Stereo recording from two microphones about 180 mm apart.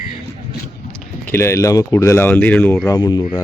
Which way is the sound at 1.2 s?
15° left (ahead or behind).